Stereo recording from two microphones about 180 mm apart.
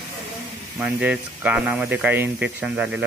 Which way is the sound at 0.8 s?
10° right (ahead or behind).